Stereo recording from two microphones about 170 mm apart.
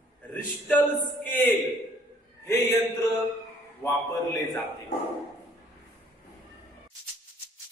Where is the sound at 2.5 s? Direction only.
25° left (ahead or behind).